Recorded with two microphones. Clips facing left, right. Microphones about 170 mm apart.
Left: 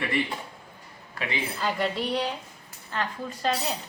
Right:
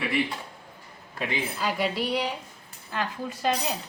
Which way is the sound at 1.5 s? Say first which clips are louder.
Even; 5° right (ahead or behind).